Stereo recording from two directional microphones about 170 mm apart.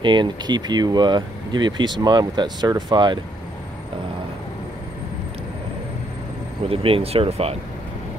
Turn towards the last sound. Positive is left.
turn(degrees=-35)  # may be behind; listen again after turning